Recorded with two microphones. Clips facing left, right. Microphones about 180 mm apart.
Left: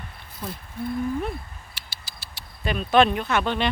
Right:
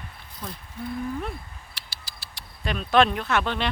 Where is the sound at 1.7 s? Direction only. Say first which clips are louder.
Left 1 dB; centre (ahead or behind).